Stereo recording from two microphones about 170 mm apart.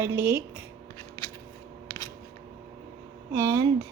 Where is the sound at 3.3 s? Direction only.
15° right (ahead or behind).